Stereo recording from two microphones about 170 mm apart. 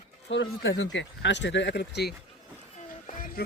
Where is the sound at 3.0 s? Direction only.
55° left (ahead or behind).